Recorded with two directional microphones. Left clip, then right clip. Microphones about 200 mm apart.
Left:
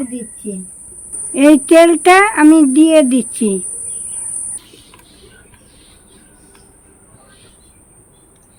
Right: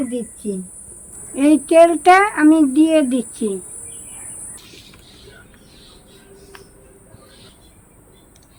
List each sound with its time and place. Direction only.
1.4 s speech: 50° left (ahead or behind)